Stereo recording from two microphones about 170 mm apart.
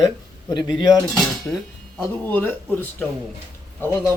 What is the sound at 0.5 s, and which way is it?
Speech, 25° left (ahead or behind).